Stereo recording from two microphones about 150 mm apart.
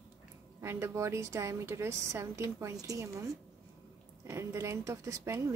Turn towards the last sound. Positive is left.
turn(degrees=-20)  # may be behind; listen again after turning